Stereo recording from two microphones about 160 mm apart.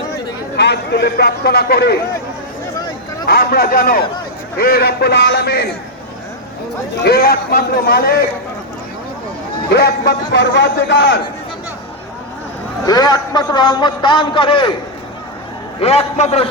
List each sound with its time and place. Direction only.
0.5 s a man's voice: 90° left
3.2 s a man's voice: 75° left (ahead or behind)
7.0 s a man's voice: 75° left (ahead or behind)
9.7 s a man's voice: 90° left
12.8 s a man's voice: 25° left (ahead or behind)
15.8 s a man's voice: 40° left (ahead or behind)